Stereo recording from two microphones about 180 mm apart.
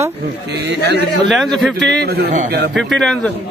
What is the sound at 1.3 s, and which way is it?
Speech, centre (ahead or behind).